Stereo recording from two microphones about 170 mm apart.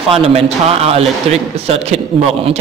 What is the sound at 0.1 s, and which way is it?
Speech, 35° right (ahead or behind).